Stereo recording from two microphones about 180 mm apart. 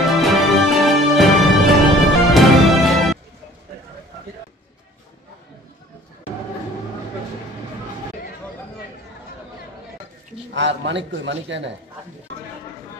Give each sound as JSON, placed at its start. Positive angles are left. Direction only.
{"t": 0.2, "sound": "music", "side_deg": 0}
{"t": 10.5, "sound": "a man's voice", "side_deg": -85}